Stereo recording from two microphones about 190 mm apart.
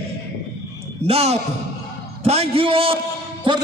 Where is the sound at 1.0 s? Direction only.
35° right (ahead or behind).